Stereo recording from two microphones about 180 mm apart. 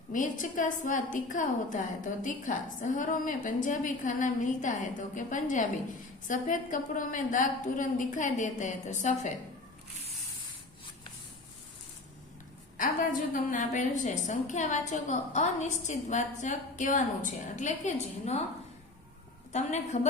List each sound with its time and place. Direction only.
0.1 s a woman's voice: 45° left (ahead or behind)
13.3 s a woman's voice: 45° left (ahead or behind)
19.5 s a woman's voice: 40° left (ahead or behind)